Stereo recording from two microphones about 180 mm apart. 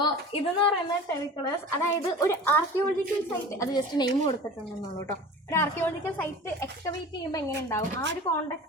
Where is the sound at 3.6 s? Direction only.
20° left (ahead or behind).